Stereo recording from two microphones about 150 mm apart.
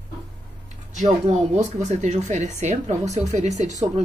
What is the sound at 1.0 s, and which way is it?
Speech, 50° right (ahead or behind).